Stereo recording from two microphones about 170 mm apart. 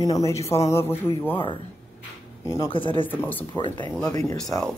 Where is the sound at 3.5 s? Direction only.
25° left (ahead or behind).